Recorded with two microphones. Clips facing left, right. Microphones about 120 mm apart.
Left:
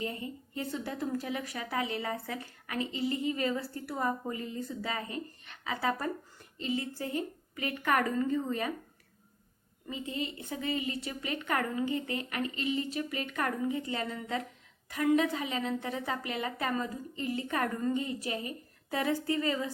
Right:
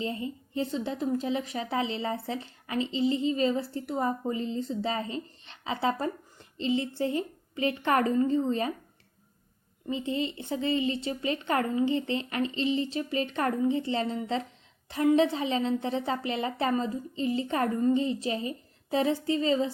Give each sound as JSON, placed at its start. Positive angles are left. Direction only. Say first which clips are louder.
{"t": 0.0, "sound": "a woman's voice", "louder": "right 4 dB", "side_deg": -25}
{"t": 9.8, "sound": "a woman's voice", "louder": "right 6 dB", "side_deg": -25}